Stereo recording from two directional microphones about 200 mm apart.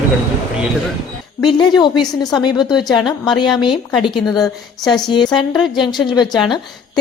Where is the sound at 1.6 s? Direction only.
20° left (ahead or behind).